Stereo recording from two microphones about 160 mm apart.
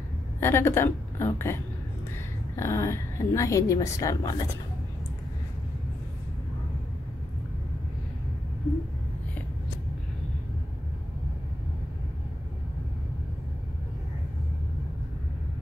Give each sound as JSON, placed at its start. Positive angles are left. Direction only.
{"t": 0.4, "sound": "a woman's voice", "side_deg": 15}